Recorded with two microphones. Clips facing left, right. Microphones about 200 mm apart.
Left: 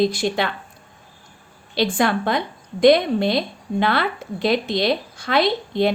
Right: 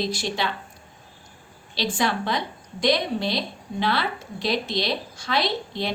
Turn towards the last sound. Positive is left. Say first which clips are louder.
# left 8 dB
turn(degrees=55)  # may be behind; listen again after turning